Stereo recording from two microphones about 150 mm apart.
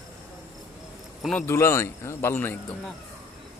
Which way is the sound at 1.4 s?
15° left (ahead or behind).